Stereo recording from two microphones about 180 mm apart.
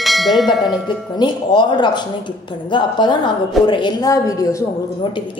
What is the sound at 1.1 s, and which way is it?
A woman's voice, 25° left (ahead or behind).